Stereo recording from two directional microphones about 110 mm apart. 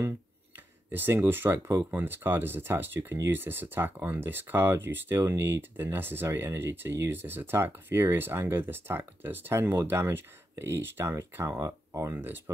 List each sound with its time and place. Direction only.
0.9 s speech: 20° right (ahead or behind)